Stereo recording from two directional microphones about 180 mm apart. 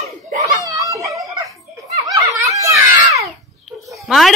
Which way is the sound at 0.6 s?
20° right (ahead or behind).